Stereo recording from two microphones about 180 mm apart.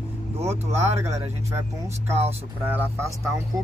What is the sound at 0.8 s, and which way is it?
Speech, 15° right (ahead or behind).